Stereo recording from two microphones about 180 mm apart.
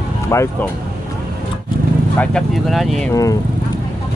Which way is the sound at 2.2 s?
Centre (ahead or behind).